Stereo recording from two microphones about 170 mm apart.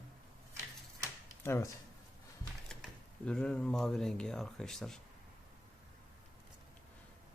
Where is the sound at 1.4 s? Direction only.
15° left (ahead or behind).